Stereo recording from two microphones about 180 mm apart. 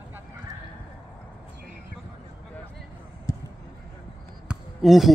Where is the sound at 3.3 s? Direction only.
20° left (ahead or behind).